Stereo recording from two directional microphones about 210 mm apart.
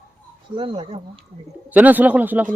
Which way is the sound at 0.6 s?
25° right (ahead or behind).